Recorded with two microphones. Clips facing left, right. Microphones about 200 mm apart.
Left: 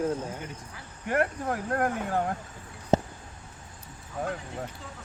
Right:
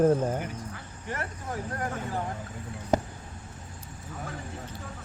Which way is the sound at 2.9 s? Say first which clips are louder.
Left 2 dB; 25° left (ahead or behind).